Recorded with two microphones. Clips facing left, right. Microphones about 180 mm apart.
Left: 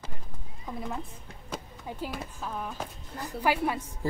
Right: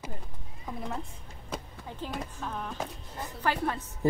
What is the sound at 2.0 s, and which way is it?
Speech, 5° left (ahead or behind).